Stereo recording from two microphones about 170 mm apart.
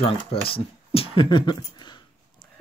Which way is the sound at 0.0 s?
35° left (ahead or behind).